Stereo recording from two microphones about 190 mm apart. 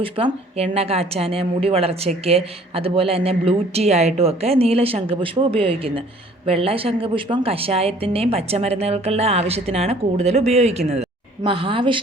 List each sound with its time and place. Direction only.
0.0 s a woman's voice: 30° right (ahead or behind)